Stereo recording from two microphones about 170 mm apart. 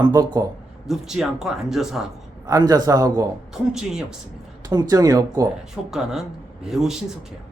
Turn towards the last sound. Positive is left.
turn(degrees=0)  # may be behind; listen again after turning